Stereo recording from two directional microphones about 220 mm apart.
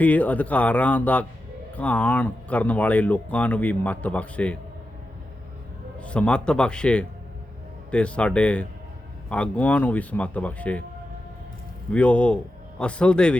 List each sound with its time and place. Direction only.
0.0 s speech: 5° left (ahead or behind)
6.0 s a man's voice: 5° left (ahead or behind)
11.9 s a man's voice: 5° left (ahead or behind)